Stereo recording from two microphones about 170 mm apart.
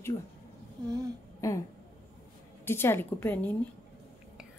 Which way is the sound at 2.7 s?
15° left (ahead or behind).